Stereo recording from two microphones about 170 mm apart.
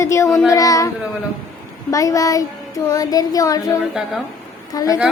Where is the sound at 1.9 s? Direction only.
20° left (ahead or behind).